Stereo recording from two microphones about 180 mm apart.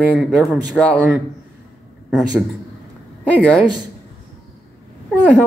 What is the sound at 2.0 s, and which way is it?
Speech, 5° right (ahead or behind).